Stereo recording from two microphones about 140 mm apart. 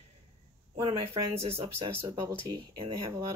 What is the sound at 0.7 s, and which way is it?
Speech, 40° right (ahead or behind).